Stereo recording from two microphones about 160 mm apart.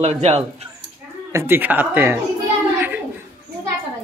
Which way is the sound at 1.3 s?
15° right (ahead or behind).